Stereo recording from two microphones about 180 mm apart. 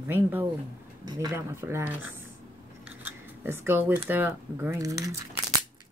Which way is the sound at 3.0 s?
10° right (ahead or behind).